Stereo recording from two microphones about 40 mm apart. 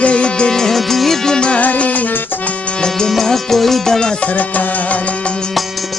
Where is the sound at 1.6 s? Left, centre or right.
Left.